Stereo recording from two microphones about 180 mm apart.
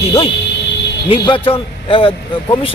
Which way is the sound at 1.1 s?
30° left (ahead or behind).